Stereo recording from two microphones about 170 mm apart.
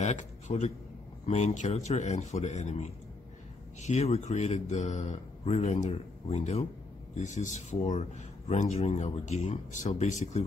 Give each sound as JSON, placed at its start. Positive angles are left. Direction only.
{"t": 0.0, "sound": "a man's voice", "side_deg": 45}